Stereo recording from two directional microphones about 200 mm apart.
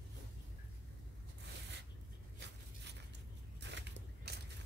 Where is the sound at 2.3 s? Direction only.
60° right (ahead or behind).